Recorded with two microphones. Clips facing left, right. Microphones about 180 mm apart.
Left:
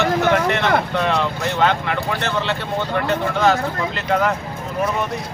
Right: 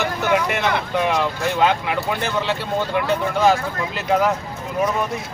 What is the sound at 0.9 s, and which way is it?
Speech, 10° right (ahead or behind).